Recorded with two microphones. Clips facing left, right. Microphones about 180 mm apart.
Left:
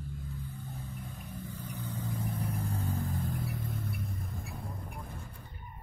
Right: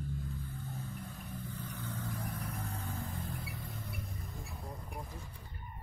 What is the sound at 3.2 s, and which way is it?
Vehicle, 45° left (ahead or behind).